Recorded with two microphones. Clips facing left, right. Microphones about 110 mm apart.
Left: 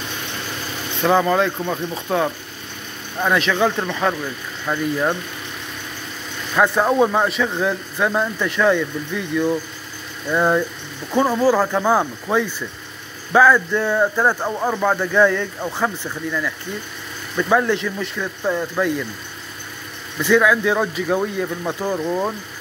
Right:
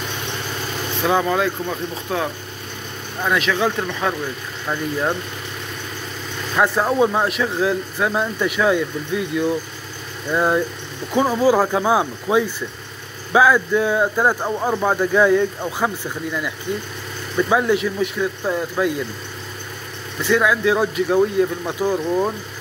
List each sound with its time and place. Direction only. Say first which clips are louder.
1.0 s speech: left 2 dB; centre (ahead or behind)
6.5 s speech: left 2 dB; centre (ahead or behind)
20.2 s speech: left 2 dB; centre (ahead or behind)